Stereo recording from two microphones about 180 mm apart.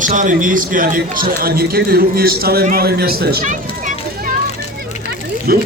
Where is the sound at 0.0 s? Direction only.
45° right (ahead or behind).